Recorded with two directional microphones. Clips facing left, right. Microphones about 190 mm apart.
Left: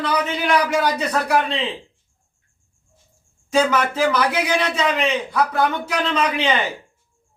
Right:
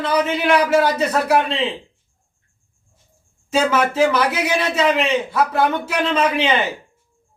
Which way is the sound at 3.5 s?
5° right (ahead or behind).